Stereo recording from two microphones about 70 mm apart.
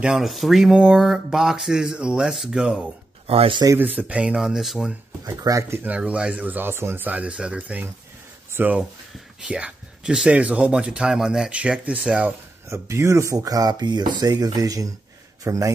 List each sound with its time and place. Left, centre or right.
0.0 s speech: centre
5.2 s speech: right
5.9 s speech: centre
8.5 s speech: right
9.4 s speech: centre
12.6 s speech: right
15.4 s a man's voice: right